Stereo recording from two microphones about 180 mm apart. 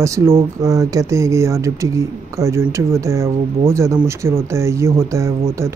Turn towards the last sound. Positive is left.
turn(degrees=-15)  # may be behind; listen again after turning